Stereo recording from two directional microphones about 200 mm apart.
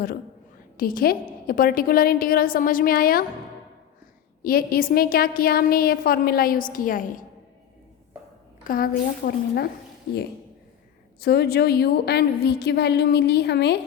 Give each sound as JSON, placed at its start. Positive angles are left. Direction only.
{"t": 0.8, "sound": "a woman's voice", "side_deg": 45}
{"t": 4.4, "sound": "a woman's voice", "side_deg": 50}
{"t": 8.6, "sound": "a woman's voice", "side_deg": 45}
{"t": 11.2, "sound": "a woman's voice", "side_deg": 50}